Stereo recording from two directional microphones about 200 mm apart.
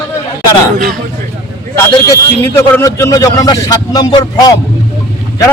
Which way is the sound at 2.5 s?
15° left (ahead or behind).